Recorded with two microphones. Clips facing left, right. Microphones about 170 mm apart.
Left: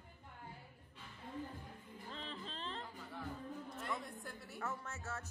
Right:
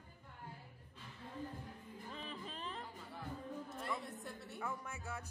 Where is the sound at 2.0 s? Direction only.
10° right (ahead or behind).